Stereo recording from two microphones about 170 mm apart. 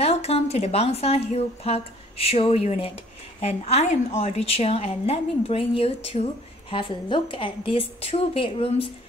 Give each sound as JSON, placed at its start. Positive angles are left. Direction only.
{"t": 0.0, "sound": "a woman's voice", "side_deg": 35}